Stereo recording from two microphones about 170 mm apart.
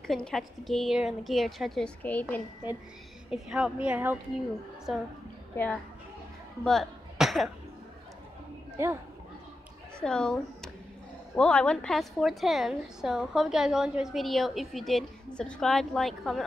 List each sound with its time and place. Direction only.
0.0 s a woman's voice: 5° left (ahead or behind)
3.3 s a woman's voice: 5° right (ahead or behind)
6.6 s speech: centre (ahead or behind)
8.8 s a woman's voice: 15° right (ahead or behind)
9.9 s a woman's voice: 5° left (ahead or behind)